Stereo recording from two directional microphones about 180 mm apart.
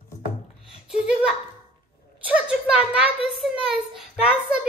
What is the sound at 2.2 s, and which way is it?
A child's voice, 5° right (ahead or behind).